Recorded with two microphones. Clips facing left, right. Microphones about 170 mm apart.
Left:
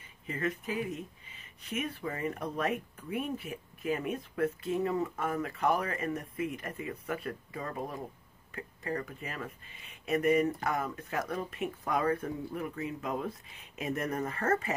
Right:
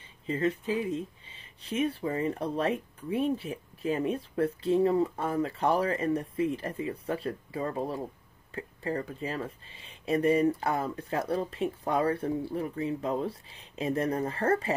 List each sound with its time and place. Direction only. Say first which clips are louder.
0.3 s speech: right 6 dB; 30° right (ahead or behind)